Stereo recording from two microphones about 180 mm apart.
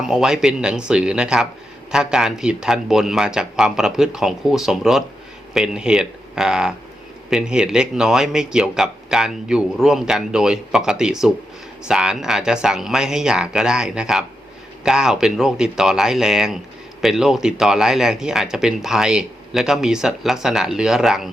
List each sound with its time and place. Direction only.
0.0 s speech: 5° right (ahead or behind)